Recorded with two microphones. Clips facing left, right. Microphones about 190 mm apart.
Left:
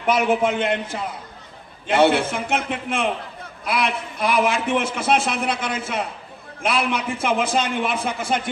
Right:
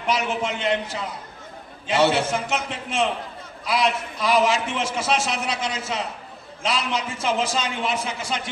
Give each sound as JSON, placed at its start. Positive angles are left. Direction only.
{"t": 0.0, "sound": "a man's voice", "side_deg": 55}